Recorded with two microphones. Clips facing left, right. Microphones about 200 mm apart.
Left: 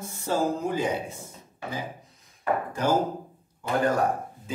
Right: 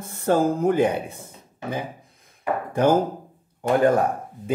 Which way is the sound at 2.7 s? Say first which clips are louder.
Right 8 dB; 60° right (ahead or behind).